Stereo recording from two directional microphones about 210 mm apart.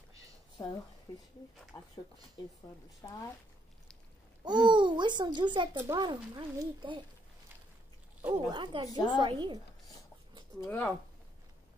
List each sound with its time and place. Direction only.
0.6 s a woman's voice: 20° left (ahead or behind)
4.5 s speech: 20° right (ahead or behind)
8.5 s speech: 20° right (ahead or behind)
8.9 s a woman's voice: 20° left (ahead or behind)
9.2 s speech: 20° right (ahead or behind)
10.6 s speech: 10° left (ahead or behind)